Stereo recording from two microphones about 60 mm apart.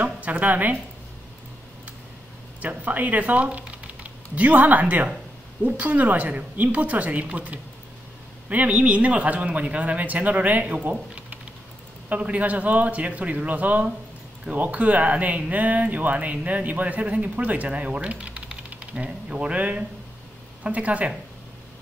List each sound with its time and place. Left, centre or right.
0.0 s a woman's voice: right
2.6 s speech: right